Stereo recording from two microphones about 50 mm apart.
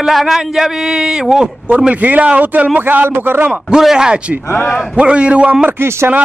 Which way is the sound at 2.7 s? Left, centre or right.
Right.